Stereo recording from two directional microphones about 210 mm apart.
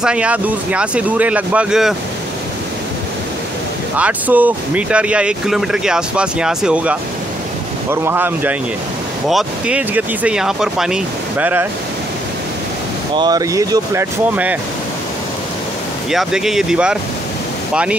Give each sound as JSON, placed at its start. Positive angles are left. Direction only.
{"t": 0.0, "sound": "speech", "side_deg": -5}
{"t": 3.9, "sound": "speech", "side_deg": -10}
{"t": 13.1, "sound": "speech", "side_deg": -20}
{"t": 16.1, "sound": "speech", "side_deg": 0}